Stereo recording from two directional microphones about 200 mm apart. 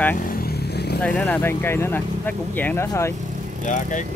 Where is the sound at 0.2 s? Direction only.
45° left (ahead or behind).